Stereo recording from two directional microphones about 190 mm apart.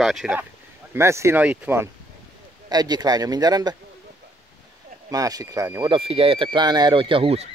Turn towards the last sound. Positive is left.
turn(degrees=-30)  # may be behind; listen again after turning